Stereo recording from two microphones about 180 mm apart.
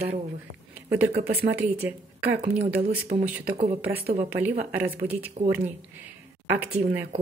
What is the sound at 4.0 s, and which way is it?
Speech, 60° right (ahead or behind).